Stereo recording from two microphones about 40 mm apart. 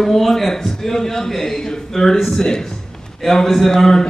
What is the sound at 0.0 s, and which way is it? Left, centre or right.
A man's voice, centre.